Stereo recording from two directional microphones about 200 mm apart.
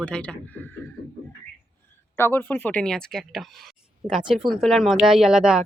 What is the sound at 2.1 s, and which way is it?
Speech, 10° left (ahead or behind).